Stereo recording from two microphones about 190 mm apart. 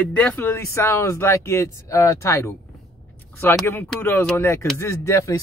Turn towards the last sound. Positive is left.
turn(degrees=15)  # may be behind; listen again after turning